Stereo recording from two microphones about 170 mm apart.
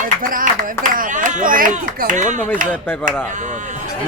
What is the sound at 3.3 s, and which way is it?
Speech, 45° right (ahead or behind).